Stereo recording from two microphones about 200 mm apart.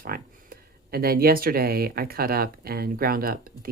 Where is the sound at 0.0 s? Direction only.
45° right (ahead or behind).